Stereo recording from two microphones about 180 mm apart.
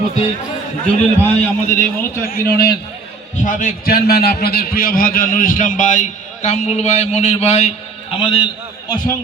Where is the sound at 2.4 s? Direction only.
20° left (ahead or behind).